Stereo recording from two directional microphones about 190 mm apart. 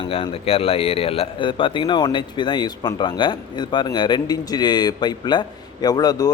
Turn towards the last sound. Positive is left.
turn(degrees=20)  # may be behind; listen again after turning